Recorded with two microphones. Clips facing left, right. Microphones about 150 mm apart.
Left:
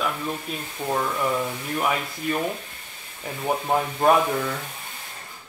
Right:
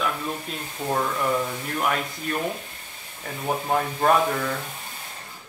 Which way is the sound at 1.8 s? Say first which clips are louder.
Even; 5° left (ahead or behind).